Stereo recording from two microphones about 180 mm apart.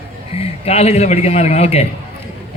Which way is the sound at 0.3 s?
35° left (ahead or behind).